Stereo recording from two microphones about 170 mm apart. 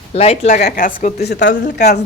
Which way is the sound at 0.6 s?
60° left (ahead or behind).